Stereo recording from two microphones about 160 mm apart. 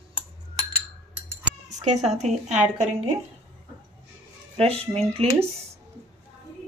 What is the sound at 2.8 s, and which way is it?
Speech, 45° right (ahead or behind).